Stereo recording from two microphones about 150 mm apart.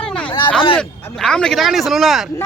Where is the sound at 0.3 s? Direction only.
35° left (ahead or behind).